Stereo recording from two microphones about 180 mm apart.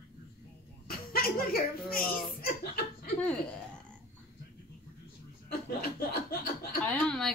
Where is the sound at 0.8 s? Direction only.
55° left (ahead or behind).